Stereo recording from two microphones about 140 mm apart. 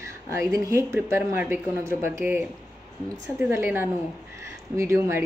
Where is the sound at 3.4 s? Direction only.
15° right (ahead or behind).